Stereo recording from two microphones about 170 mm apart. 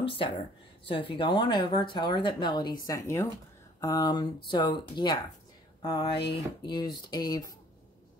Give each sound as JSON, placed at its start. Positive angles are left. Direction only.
{"t": 0.2, "sound": "speech", "side_deg": 30}